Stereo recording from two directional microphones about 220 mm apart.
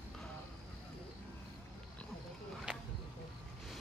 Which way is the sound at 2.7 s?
5° right (ahead or behind).